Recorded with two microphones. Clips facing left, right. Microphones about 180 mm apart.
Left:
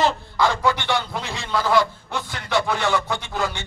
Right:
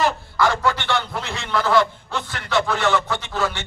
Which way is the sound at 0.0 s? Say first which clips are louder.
Even; 20° left (ahead or behind).